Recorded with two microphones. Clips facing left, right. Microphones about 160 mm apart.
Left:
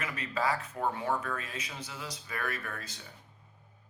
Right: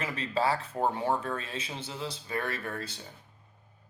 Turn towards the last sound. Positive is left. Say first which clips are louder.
# right 4 dB
turn(degrees=-30)  # may be behind; listen again after turning